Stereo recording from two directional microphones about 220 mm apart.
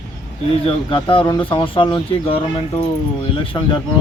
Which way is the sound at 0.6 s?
25° left (ahead or behind).